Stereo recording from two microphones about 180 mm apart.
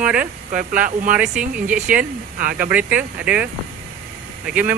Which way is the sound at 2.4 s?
55° right (ahead or behind).